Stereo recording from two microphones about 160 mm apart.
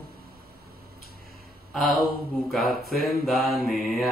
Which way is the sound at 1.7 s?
Centre (ahead or behind).